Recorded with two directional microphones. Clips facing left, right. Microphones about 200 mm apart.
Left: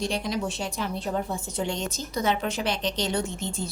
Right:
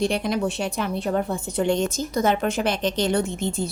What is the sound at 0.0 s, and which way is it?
A woman's voice, 60° right (ahead or behind).